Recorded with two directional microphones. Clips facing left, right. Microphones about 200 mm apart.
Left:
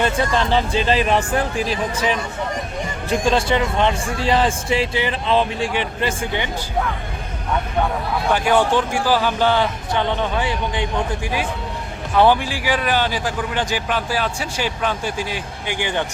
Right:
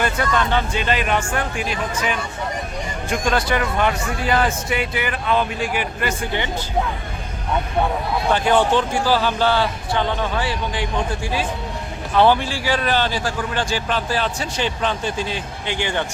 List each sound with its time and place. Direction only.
0.0 s a man's voice: 25° left (ahead or behind)
8.7 s a man's voice: 10° left (ahead or behind)